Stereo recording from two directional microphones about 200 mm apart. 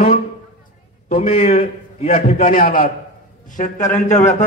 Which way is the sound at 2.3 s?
45° left (ahead or behind).